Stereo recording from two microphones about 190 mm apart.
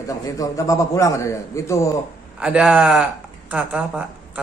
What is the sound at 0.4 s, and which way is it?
A man's voice, 15° left (ahead or behind).